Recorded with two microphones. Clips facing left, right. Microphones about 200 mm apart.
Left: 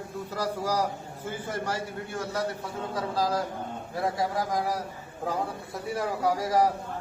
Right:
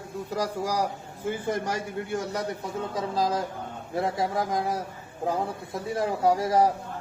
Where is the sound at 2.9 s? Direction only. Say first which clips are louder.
Even; 20° right (ahead or behind).